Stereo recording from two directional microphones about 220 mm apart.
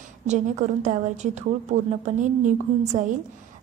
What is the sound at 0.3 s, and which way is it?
A woman's voice, 30° right (ahead or behind).